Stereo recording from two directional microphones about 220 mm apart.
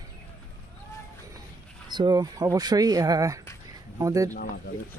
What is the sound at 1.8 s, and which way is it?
Speech, 20° right (ahead or behind).